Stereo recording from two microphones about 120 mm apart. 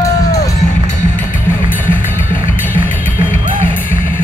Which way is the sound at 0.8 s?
90° left.